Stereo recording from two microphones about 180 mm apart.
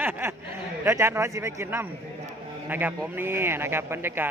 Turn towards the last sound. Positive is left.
turn(degrees=-10)  # may be behind; listen again after turning